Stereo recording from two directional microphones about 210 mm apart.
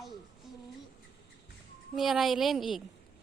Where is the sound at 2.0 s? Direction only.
Centre (ahead or behind).